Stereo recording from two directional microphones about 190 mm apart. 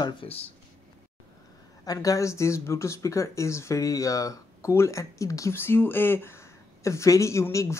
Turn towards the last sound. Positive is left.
turn(degrees=15)  # may be behind; listen again after turning